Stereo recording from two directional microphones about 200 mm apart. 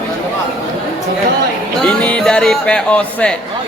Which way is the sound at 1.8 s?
5° left (ahead or behind).